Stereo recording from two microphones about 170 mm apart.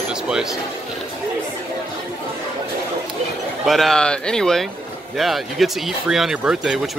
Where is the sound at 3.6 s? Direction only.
Centre (ahead or behind).